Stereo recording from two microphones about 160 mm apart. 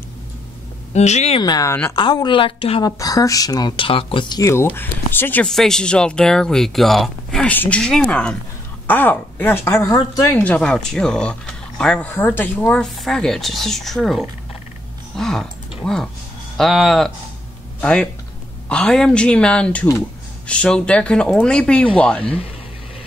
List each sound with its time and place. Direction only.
0.9 s speech: 45° left (ahead or behind)
1.4 s a woman's voice: 25° left (ahead or behind)
2.0 s a woman's voice: 30° left (ahead or behind)
3.0 s speech: 20° left (ahead or behind)
10.4 s speech: 5° left (ahead or behind)